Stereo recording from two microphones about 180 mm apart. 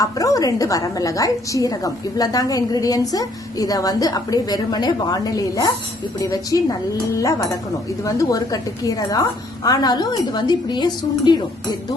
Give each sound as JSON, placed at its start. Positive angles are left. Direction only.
{"t": 0.0, "sound": "a woman's voice", "side_deg": 20}